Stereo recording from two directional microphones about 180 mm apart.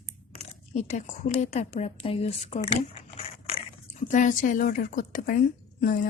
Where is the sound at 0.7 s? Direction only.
35° left (ahead or behind).